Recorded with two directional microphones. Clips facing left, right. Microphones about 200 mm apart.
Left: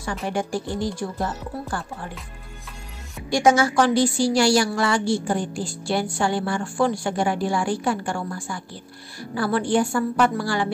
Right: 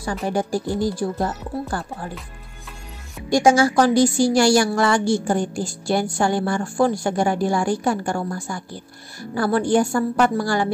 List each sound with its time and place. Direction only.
0.0 s speech: 35° right (ahead or behind)
3.4 s a woman's voice: 30° right (ahead or behind)